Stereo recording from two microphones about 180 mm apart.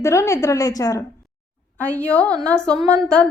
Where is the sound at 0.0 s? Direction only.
15° left (ahead or behind).